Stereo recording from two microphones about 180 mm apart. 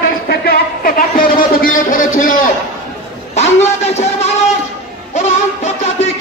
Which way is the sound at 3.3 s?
35° left (ahead or behind).